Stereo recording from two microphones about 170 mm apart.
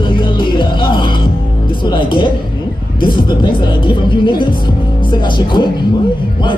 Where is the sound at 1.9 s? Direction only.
30° left (ahead or behind).